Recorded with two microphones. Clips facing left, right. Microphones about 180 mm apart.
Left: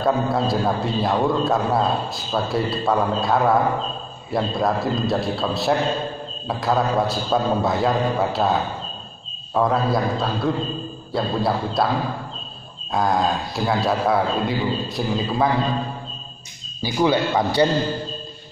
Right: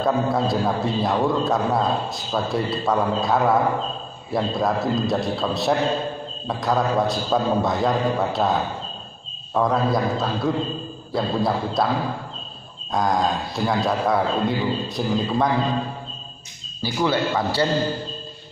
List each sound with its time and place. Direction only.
0.0 s a man's voice: centre (ahead or behind)
12.9 s a man's voice: 5° left (ahead or behind)
16.8 s a man's voice: 15° left (ahead or behind)